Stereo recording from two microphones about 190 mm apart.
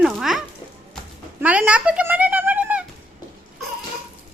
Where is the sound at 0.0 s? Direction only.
Centre (ahead or behind).